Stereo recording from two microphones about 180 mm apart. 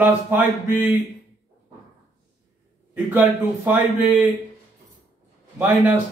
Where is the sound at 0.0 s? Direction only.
10° right (ahead or behind).